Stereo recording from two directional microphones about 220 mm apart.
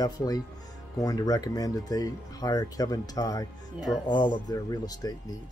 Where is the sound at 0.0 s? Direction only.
15° left (ahead or behind).